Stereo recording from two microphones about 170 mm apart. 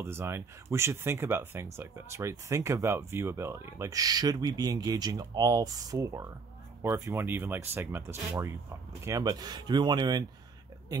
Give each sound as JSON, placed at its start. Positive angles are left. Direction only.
{"t": 0.0, "sound": "speech", "side_deg": -15}